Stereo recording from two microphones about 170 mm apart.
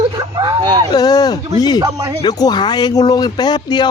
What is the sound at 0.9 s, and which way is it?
Speech, 25° left (ahead or behind).